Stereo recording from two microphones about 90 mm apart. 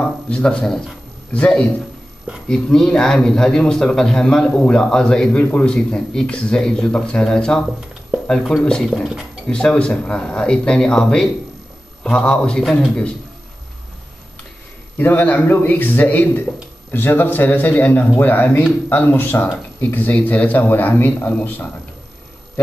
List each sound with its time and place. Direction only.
0.3 s speech: 10° left (ahead or behind)
9.5 s speech: 10° left (ahead or behind)
15.0 s speech: 20° left (ahead or behind)